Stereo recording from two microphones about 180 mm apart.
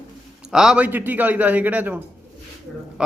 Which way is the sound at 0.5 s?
5° right (ahead or behind).